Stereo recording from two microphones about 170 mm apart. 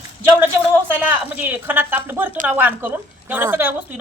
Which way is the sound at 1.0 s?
10° right (ahead or behind).